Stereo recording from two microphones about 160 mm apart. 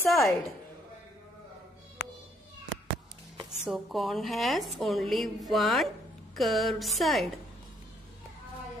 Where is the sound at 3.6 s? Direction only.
Centre (ahead or behind).